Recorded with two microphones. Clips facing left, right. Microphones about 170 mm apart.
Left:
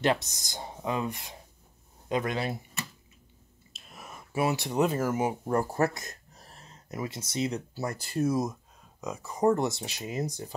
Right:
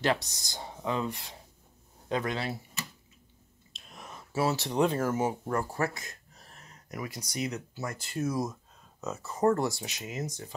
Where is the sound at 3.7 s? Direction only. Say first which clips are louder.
Even; 5° left (ahead or behind).